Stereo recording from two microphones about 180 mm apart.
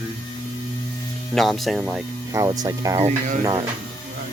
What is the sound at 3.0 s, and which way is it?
Speech, 40° right (ahead or behind).